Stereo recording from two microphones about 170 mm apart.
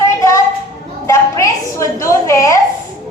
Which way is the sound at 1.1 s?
15° left (ahead or behind).